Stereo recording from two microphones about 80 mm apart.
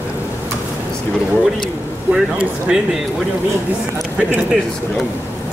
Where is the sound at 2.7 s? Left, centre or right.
Centre.